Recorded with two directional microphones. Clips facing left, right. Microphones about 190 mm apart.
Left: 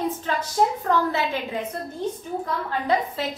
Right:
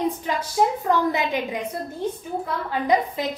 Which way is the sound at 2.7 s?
15° right (ahead or behind).